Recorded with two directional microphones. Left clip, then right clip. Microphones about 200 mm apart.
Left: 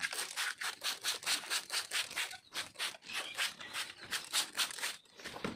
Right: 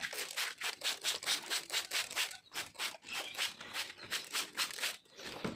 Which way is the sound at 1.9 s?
30° right (ahead or behind).